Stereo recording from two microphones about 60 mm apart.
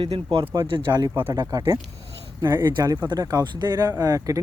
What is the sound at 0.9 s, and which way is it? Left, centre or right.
Speech, right.